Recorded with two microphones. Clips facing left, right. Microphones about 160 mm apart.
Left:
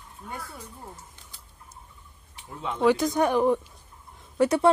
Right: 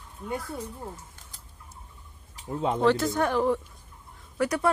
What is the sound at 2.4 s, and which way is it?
Speech, 40° right (ahead or behind).